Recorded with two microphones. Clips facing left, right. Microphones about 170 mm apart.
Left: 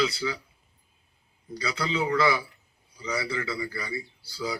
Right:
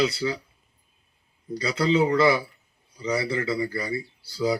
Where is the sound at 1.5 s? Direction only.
25° right (ahead or behind).